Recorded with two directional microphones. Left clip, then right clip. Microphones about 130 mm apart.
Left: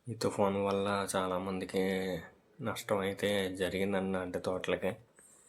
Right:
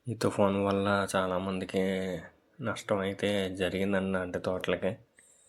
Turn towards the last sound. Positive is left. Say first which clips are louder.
# right 3 dB
turn(degrees=-25)  # may be behind; listen again after turning